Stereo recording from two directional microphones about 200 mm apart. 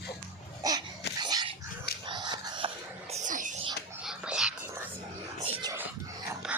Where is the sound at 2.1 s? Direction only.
20° right (ahead or behind).